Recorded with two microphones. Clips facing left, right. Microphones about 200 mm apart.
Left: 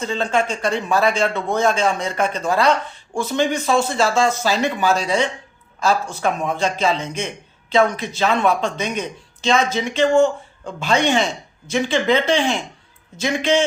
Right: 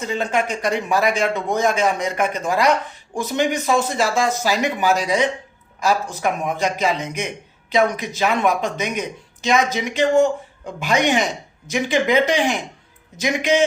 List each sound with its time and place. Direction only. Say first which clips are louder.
0.0 s speech: left 1 dB; 15° right (ahead or behind)
9.7 s speech: left 2 dB; 15° right (ahead or behind)